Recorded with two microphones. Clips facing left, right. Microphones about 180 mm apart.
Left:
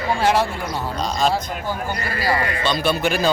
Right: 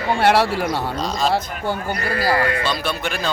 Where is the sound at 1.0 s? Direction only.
Centre (ahead or behind).